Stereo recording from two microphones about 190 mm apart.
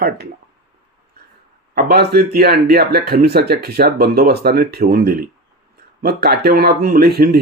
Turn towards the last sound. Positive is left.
turn(degrees=-55)  # may be behind; listen again after turning